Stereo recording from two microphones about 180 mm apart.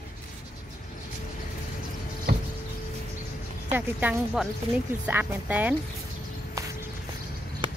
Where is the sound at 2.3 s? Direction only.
65° right (ahead or behind).